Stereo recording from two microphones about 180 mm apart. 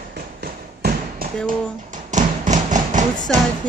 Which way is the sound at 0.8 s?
55° right (ahead or behind).